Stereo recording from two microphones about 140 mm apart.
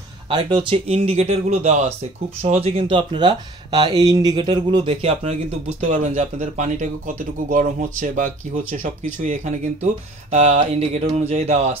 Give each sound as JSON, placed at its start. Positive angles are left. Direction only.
{"t": 0.5, "sound": "speech", "side_deg": -40}
{"t": 9.3, "sound": "speech", "side_deg": -55}